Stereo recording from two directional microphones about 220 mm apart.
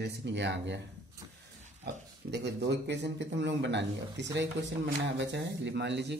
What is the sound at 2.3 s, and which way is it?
Speech, 50° right (ahead or behind).